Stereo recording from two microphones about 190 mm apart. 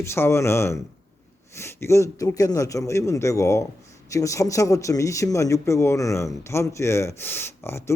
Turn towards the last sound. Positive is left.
turn(degrees=15)  # may be behind; listen again after turning